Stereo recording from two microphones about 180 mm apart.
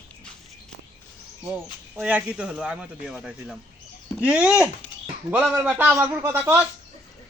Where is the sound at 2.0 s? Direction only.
10° right (ahead or behind).